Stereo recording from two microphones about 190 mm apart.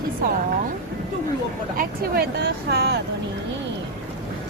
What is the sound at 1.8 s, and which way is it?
A woman's voice, 55° right (ahead or behind).